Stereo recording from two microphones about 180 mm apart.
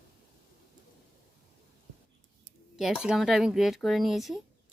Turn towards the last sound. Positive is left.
turn(degrees=0)  # may be behind; listen again after turning